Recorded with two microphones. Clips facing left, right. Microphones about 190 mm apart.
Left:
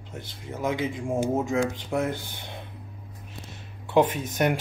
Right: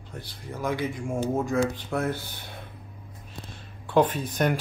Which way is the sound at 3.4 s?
10° left (ahead or behind).